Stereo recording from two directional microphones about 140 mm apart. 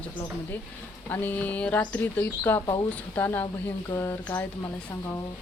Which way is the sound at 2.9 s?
15° left (ahead or behind).